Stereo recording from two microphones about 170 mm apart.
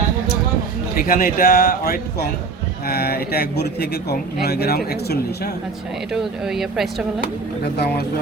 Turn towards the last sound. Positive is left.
turn(degrees=-5)  # may be behind; listen again after turning